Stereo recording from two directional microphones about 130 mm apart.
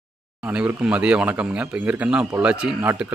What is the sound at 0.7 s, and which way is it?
Speech, 10° right (ahead or behind).